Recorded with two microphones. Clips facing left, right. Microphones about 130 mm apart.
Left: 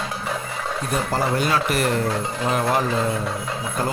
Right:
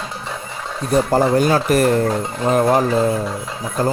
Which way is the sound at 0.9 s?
40° right (ahead or behind).